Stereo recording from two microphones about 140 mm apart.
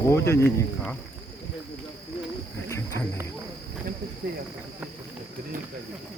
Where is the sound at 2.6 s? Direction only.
20° left (ahead or behind).